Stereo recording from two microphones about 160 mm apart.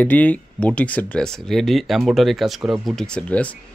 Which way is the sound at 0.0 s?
10° left (ahead or behind).